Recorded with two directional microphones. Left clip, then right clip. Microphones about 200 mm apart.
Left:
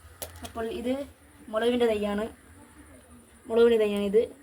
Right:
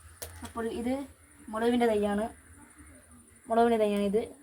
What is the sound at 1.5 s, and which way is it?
Speech, 20° right (ahead or behind).